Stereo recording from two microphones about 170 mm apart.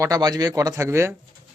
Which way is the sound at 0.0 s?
20° right (ahead or behind).